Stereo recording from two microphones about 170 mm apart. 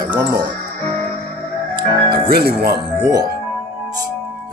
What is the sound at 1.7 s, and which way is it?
Music, 65° right (ahead or behind).